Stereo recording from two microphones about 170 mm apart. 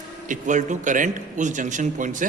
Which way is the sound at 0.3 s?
45° right (ahead or behind).